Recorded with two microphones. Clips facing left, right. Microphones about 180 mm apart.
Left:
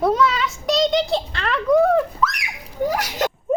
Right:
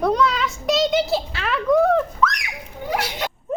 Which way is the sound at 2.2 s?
5° left (ahead or behind).